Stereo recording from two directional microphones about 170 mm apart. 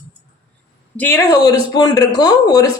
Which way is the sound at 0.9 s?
15° left (ahead or behind).